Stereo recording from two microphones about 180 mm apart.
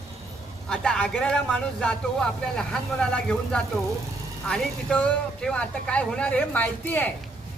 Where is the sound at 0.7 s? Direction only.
5° left (ahead or behind).